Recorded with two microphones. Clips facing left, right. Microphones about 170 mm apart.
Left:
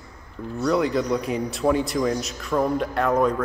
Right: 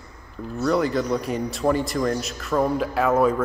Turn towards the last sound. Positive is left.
turn(degrees=-5)  # may be behind; listen again after turning